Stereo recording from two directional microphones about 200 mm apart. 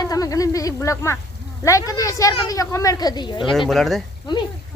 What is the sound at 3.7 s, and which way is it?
Speech, centre (ahead or behind).